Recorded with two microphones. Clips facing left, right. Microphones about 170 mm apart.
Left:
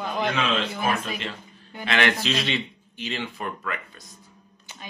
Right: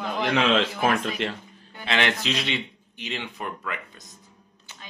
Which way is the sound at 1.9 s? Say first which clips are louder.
Left 1 dB; 25° right (ahead or behind).